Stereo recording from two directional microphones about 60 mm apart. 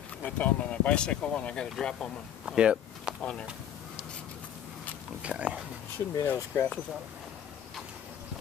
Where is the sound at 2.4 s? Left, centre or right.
Centre.